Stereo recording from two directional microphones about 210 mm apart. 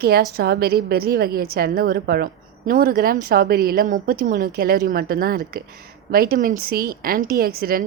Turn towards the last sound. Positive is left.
turn(degrees=-45)  # may be behind; listen again after turning